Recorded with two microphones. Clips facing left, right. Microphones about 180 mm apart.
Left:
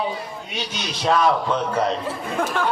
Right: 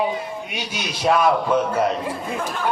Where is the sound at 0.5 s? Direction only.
10° right (ahead or behind).